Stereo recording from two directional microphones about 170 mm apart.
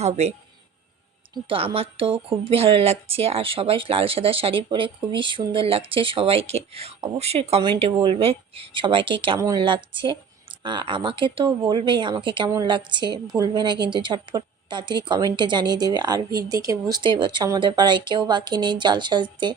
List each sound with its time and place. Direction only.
0.0 s a woman's voice: 40° right (ahead or behind)